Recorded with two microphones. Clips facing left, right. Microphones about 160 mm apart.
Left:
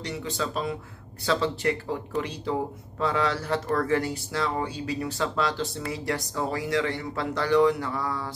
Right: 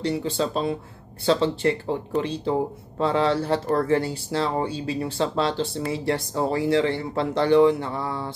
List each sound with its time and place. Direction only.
0.0 s speech: 30° right (ahead or behind)